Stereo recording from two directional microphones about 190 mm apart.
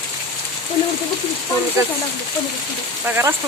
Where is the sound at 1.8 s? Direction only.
15° right (ahead or behind).